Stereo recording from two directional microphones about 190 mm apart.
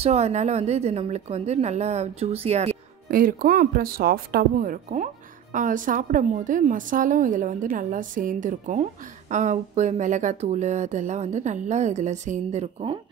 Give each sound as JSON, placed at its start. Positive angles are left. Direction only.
{"t": 0.0, "sound": "speech", "side_deg": -35}
{"t": 3.1, "sound": "speech", "side_deg": -50}